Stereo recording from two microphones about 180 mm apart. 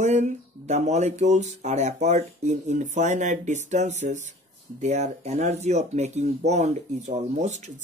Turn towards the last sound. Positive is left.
turn(degrees=-40)  # may be behind; listen again after turning